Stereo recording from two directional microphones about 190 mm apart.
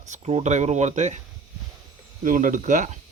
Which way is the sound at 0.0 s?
35° right (ahead or behind).